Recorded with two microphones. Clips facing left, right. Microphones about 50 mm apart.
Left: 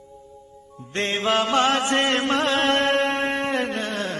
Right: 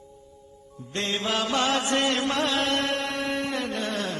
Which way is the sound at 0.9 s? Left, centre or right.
Left.